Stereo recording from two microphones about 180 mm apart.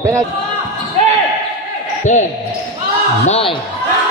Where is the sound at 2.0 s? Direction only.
40° left (ahead or behind).